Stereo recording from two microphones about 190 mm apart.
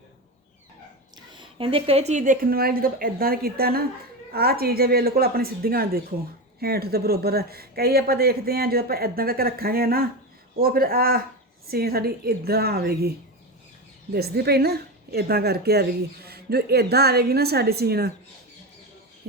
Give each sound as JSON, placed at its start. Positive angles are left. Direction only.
{"t": 1.3, "sound": "a woman's voice", "side_deg": -25}